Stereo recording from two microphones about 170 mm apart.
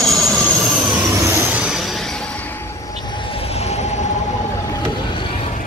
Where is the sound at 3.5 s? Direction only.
40° left (ahead or behind).